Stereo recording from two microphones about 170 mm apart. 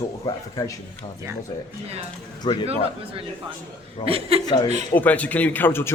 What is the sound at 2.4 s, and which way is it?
Speech, 25° left (ahead or behind).